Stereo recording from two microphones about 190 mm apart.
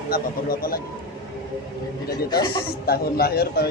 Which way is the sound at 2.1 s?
20° left (ahead or behind).